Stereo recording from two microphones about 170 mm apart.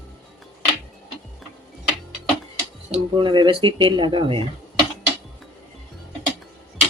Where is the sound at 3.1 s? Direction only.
25° right (ahead or behind).